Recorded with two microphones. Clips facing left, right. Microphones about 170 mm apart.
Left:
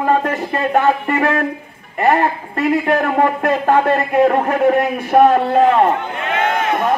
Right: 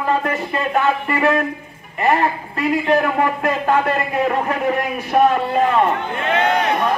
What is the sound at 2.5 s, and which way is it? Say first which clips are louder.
A man's voice: left 1 dB; 45° left (ahead or behind).